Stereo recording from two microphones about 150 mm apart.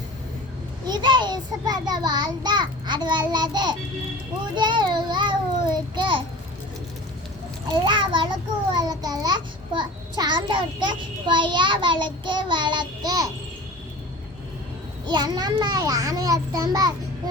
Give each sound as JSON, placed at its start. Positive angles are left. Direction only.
{"t": 0.9, "sound": "a child's voice", "side_deg": -30}
{"t": 7.7, "sound": "a child's voice", "side_deg": -30}
{"t": 15.0, "sound": "a child's voice", "side_deg": -30}